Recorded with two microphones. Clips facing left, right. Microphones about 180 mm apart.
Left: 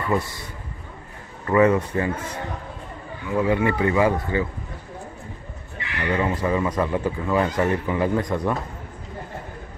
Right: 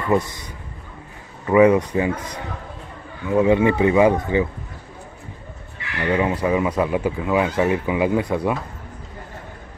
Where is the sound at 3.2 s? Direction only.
20° right (ahead or behind).